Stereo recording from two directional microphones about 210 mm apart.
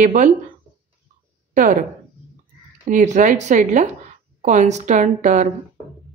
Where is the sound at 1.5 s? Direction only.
40° right (ahead or behind).